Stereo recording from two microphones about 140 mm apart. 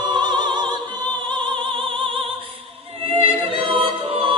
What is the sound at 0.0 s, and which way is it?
Music, 30° right (ahead or behind).